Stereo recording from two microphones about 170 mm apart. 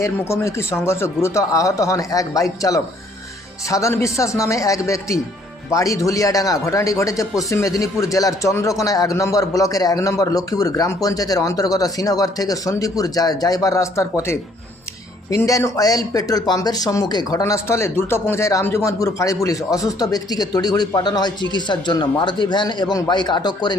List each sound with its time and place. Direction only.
0.0 s speech: 15° left (ahead or behind)